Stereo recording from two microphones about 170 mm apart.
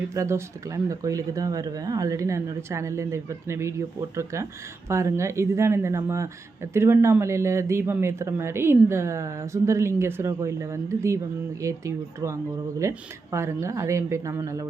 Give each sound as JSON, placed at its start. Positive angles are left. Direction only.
{"t": 0.1, "sound": "speech", "side_deg": -15}